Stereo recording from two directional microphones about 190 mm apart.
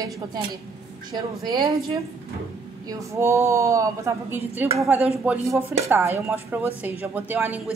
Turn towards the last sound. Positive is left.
turn(degrees=-10)  # may be behind; listen again after turning